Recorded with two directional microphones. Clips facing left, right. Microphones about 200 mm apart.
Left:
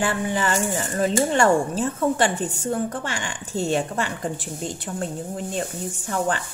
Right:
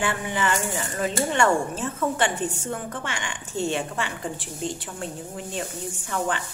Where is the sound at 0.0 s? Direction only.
35° left (ahead or behind).